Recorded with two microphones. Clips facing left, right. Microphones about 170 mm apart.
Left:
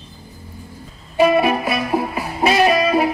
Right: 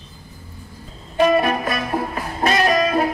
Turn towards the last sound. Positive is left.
turn(degrees=10)  # may be behind; listen again after turning